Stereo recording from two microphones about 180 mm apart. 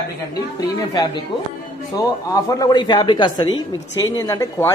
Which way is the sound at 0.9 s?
25° left (ahead or behind).